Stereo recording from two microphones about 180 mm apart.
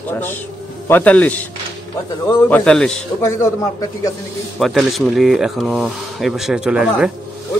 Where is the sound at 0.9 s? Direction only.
10° left (ahead or behind).